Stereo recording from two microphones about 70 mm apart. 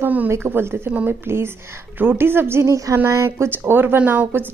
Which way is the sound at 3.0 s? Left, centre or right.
Right.